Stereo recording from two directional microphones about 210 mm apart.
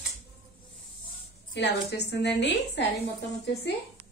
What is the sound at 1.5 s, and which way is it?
A woman's voice, 55° left (ahead or behind).